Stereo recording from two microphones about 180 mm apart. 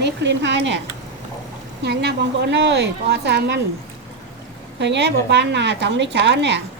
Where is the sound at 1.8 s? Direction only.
70° right (ahead or behind).